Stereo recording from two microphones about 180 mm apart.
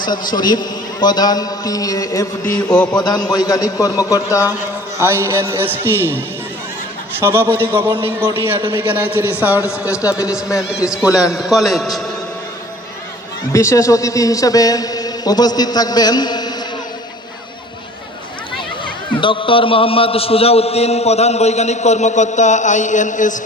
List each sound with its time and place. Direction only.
0.3 s a man's voice: 25° left (ahead or behind)
4.9 s a man's voice: 15° right (ahead or behind)
9.6 s a man's voice: 15° left (ahead or behind)
10.8 s a man's voice: 5° right (ahead or behind)
13.5 s a man's voice: 15° left (ahead or behind)
19.2 s a man's voice: 30° left (ahead or behind); by 23.4 s 45° left (ahead or behind)